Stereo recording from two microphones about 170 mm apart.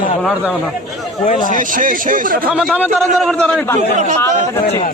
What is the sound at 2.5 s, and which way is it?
A man's voice, 5° right (ahead or behind).